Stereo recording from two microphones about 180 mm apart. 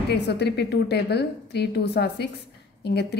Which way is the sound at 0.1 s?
65° left (ahead or behind).